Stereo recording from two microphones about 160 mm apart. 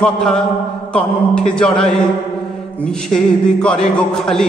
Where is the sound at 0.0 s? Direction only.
5° left (ahead or behind).